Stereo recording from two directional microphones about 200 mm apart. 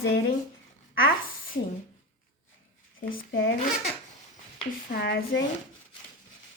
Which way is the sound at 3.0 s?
45° left (ahead or behind).